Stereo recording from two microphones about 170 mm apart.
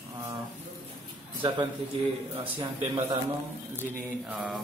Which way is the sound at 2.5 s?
30° right (ahead or behind).